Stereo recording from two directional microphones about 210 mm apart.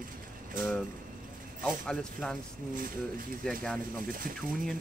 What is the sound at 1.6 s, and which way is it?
Speech, 5° left (ahead or behind).